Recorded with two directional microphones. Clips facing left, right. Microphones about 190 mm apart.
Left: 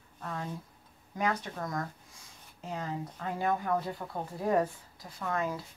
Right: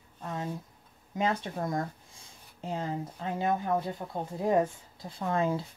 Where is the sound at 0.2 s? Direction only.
20° right (ahead or behind).